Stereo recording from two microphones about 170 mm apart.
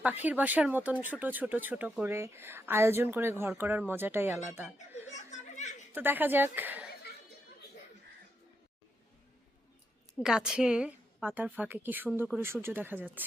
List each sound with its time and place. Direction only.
0.0 s speech: 10° right (ahead or behind)
5.1 s a sound: 45° left (ahead or behind)
5.9 s speech: 10° right (ahead or behind)
10.2 s speech: 5° right (ahead or behind)